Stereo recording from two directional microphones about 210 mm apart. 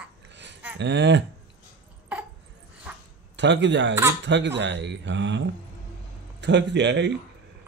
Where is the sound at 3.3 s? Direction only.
60° right (ahead or behind).